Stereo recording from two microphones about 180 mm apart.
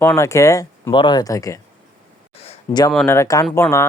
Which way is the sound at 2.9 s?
15° left (ahead or behind).